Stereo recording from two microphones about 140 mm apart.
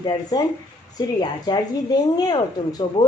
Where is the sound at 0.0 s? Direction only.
30° left (ahead or behind).